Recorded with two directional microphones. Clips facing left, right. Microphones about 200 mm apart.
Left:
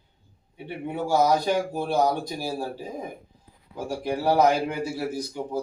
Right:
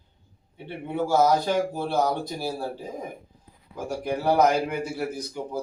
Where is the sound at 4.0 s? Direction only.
30° left (ahead or behind).